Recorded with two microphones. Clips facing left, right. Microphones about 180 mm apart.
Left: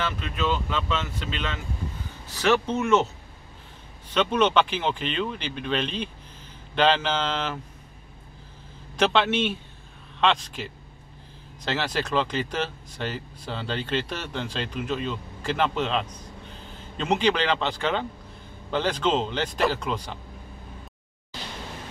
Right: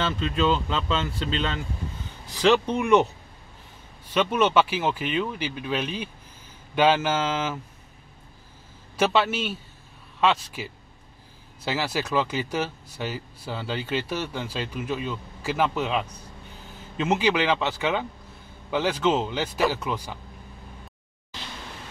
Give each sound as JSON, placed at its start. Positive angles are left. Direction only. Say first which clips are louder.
{"t": 0.0, "sound": "speech", "louder": "right 4 dB", "side_deg": -30}
{"t": 2.2, "sound": "speech", "louder": "right 2 dB", "side_deg": -15}
{"t": 4.1, "sound": "speech", "louder": "even", "side_deg": -10}
{"t": 8.9, "sound": "a man's voice", "louder": "even", "side_deg": -5}